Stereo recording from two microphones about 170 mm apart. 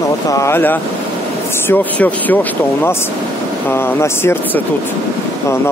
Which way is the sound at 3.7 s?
15° left (ahead or behind).